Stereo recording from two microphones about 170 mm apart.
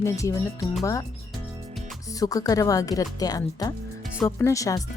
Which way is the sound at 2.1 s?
20° left (ahead or behind).